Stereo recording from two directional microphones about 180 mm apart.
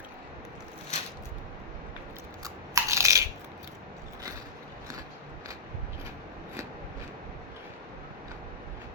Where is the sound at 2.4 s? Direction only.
15° right (ahead or behind).